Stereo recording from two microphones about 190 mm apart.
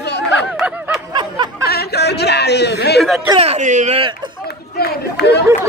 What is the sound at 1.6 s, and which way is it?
Speech, 55° left (ahead or behind).